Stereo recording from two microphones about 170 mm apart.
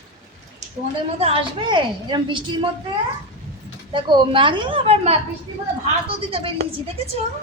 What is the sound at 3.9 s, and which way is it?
A woman's voice, 30° right (ahead or behind).